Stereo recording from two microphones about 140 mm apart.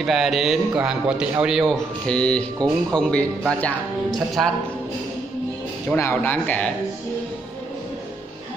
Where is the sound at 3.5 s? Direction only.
10° left (ahead or behind).